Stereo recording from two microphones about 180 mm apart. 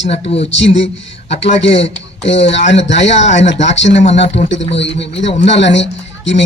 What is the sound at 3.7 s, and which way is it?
Speech, 90° left.